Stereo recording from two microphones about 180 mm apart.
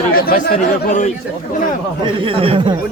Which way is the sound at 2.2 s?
30° right (ahead or behind).